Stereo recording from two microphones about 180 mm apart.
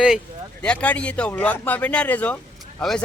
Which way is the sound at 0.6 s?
5° left (ahead or behind).